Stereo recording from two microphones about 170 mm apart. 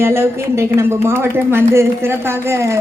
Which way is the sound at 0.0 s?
15° right (ahead or behind).